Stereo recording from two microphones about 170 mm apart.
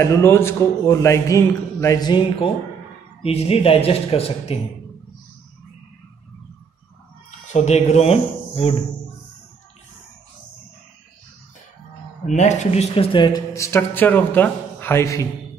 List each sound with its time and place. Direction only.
0.0 s a man's voice: 15° left (ahead or behind); by 4.6 s 35° left (ahead or behind)
7.2 s speech: 40° left (ahead or behind)
12.3 s a man's voice: 45° left (ahead or behind); by 13.4 s 30° left (ahead or behind)
13.5 s a man's voice: 15° left (ahead or behind)